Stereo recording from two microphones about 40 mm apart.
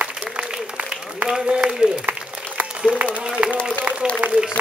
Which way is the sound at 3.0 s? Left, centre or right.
Right.